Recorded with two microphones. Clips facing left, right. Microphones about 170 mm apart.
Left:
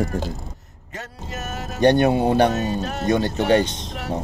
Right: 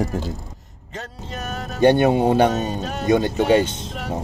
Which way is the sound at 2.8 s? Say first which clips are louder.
Left 1 dB; centre (ahead or behind).